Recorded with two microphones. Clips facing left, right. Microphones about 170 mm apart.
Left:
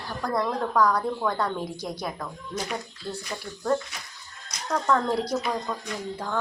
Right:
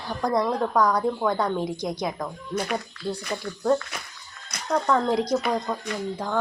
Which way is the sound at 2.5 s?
55° right (ahead or behind).